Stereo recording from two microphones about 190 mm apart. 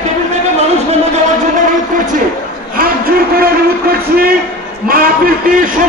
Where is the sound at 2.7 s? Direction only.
50° right (ahead or behind).